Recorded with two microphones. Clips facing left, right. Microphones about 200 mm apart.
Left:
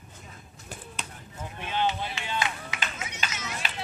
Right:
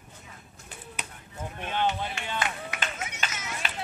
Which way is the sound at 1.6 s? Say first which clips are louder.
Even; 50° right (ahead or behind).